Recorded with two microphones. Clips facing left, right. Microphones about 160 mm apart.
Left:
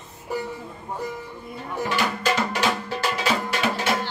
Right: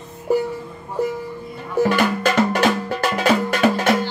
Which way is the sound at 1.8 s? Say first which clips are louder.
Right 5 dB; 55° right (ahead or behind).